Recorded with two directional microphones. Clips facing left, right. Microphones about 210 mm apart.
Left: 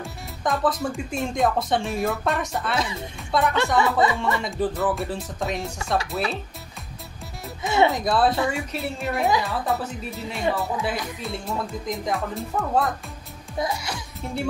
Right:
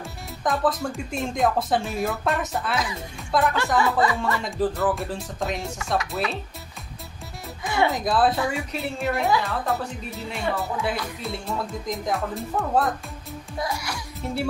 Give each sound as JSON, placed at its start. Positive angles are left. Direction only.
{"t": 0.0, "sound": "speech", "side_deg": 0}
{"t": 2.7, "sound": "speech", "side_deg": 25}
{"t": 3.3, "sound": "speech", "side_deg": 0}
{"t": 3.8, "sound": "speech", "side_deg": 20}
{"t": 4.2, "sound": "speech", "side_deg": 0}
{"t": 7.6, "sound": "music", "side_deg": 25}
{"t": 7.9, "sound": "speech", "side_deg": 0}
{"t": 13.6, "sound": "speech", "side_deg": 25}
{"t": 14.2, "sound": "speech", "side_deg": 0}